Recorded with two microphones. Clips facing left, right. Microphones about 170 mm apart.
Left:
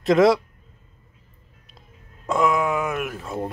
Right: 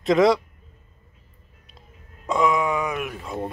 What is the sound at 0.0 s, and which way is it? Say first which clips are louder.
Speech: left 1 dB; centre (ahead or behind).